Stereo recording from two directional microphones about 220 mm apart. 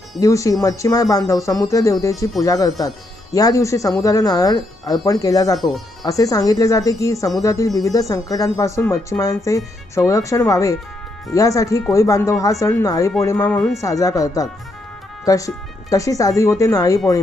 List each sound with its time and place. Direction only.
0.2 s speech: 15° left (ahead or behind)
5.5 s speech: centre (ahead or behind)
6.1 s speech: 15° left (ahead or behind)